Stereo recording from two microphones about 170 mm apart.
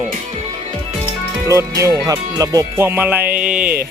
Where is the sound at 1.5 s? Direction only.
15° right (ahead or behind).